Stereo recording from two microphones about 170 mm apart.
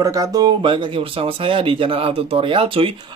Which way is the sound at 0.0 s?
20° right (ahead or behind).